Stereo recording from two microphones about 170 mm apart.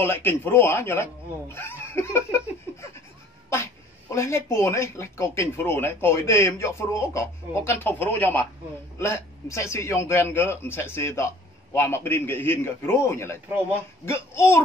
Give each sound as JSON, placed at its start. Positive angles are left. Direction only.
{"t": 0.0, "sound": "a man's voice", "side_deg": 10}
{"t": 1.5, "sound": "laughter", "side_deg": 15}
{"t": 4.1, "sound": "a man's voice", "side_deg": 15}